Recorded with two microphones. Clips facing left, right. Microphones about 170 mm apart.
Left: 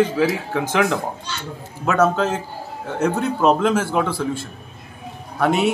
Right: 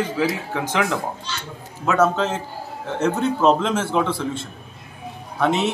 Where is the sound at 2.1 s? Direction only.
5° left (ahead or behind).